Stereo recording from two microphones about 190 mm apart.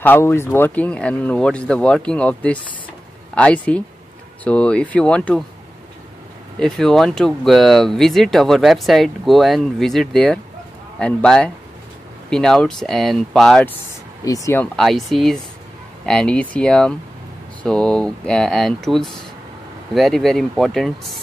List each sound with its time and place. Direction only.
0.0 s speech: 10° left (ahead or behind)
6.6 s speech: centre (ahead or behind)
14.2 s speech: 15° left (ahead or behind)
14.8 s speech: centre (ahead or behind)